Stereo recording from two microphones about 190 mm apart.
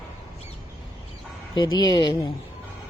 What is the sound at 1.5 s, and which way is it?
Speech, 20° left (ahead or behind).